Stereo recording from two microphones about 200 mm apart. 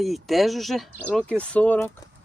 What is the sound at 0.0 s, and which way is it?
Speech, centre (ahead or behind).